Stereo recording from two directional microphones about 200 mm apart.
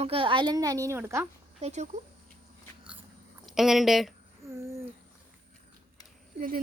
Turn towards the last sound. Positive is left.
turn(degrees=-45)  # may be behind; listen again after turning